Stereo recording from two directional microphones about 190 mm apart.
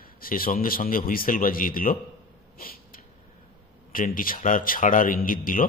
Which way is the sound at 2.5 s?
50° left (ahead or behind).